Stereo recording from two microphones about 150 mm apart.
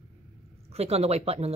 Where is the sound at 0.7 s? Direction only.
45° right (ahead or behind).